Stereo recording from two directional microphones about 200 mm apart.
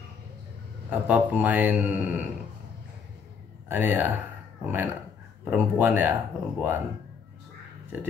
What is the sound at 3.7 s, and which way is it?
Mantra, 10° right (ahead or behind).